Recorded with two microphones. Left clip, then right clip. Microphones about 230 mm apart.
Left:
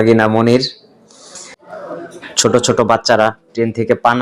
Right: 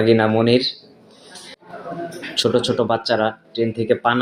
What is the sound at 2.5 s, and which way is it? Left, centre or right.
Speech, left.